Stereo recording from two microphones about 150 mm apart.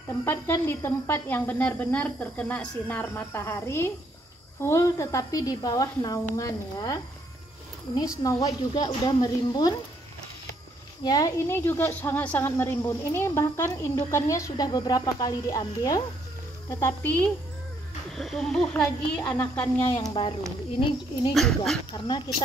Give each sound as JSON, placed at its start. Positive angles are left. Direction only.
{"t": 0.2, "sound": "a woman's voice", "side_deg": 15}
{"t": 8.2, "sound": "a woman's voice", "side_deg": 25}
{"t": 11.1, "sound": "a woman's voice", "side_deg": 25}
{"t": 18.1, "sound": "a child's voice", "side_deg": 0}
{"t": 19.2, "sound": "a woman's voice", "side_deg": 25}
{"t": 21.3, "sound": "a child's voice", "side_deg": 0}
{"t": 21.9, "sound": "a woman's voice", "side_deg": 30}